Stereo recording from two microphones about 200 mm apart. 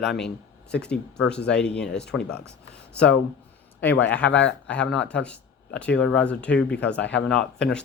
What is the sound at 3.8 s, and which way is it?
Speech, 10° left (ahead or behind).